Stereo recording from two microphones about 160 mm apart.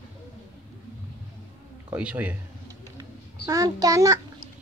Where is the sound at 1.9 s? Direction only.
10° right (ahead or behind).